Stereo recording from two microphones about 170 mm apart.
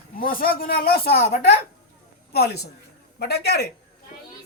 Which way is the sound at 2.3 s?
70° left (ahead or behind).